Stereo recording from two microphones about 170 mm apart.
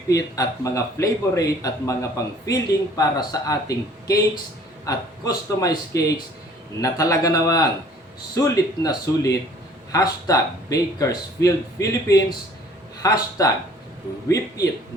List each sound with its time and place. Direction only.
0.1 s a man's voice: 20° left (ahead or behind)